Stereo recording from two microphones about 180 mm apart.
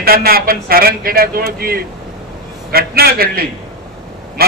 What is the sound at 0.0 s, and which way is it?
A man's voice, 55° right (ahead or behind).